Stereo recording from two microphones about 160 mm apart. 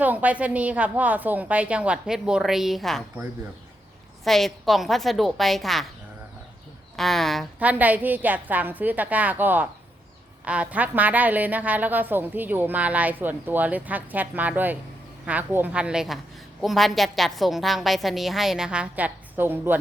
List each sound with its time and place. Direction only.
0.0 s a woman's voice: 10° right (ahead or behind)
4.2 s a woman's voice: centre (ahead or behind)
6.9 s a woman's voice: centre (ahead or behind)
7.6 s a woman's voice: 10° right (ahead or behind)